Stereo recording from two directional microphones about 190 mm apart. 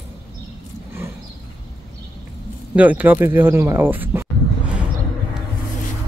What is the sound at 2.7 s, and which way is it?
Speech, 10° right (ahead or behind).